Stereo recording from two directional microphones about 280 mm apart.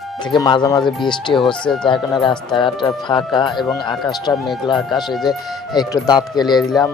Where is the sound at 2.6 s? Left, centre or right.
Centre.